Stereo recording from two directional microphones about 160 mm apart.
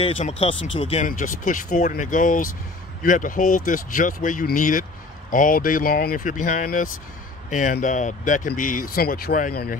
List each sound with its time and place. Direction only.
0.4 s speech: 35° left (ahead or behind)
1.0 s speech: 55° left (ahead or behind)